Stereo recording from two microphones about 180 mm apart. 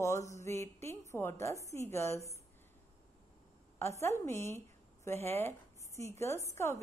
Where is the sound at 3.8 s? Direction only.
15° left (ahead or behind).